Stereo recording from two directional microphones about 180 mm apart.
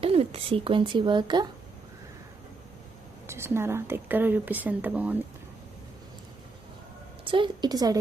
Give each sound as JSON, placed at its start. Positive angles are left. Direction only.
{"t": 0.0, "sound": "speech", "side_deg": -35}
{"t": 3.2, "sound": "a woman's voice", "side_deg": -15}
{"t": 7.3, "sound": "speech", "side_deg": -25}